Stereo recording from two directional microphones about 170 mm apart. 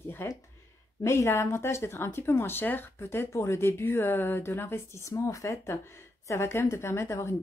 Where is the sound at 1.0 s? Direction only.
15° left (ahead or behind).